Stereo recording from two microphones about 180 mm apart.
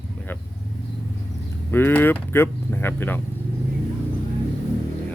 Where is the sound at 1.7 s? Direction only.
10° left (ahead or behind).